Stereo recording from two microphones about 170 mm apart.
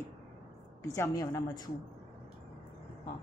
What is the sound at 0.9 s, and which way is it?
Speech, 20° left (ahead or behind).